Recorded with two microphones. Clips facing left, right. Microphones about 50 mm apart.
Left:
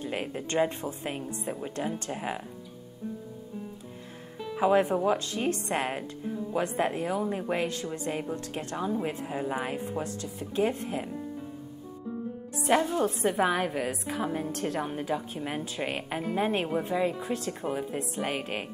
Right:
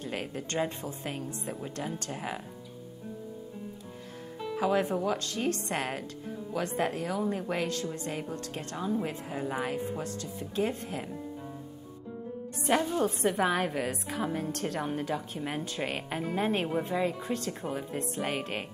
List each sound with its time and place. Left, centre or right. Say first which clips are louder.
0.0 s a woman's voice: left 3 dB; centre
4.6 s speech: left 4 dB; left
10.8 s a woman's voice: left 4 dB; centre
12.5 s a woman's voice: left 2 dB; centre